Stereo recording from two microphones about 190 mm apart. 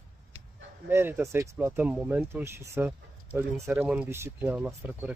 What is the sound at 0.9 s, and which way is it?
Speech, 10° right (ahead or behind).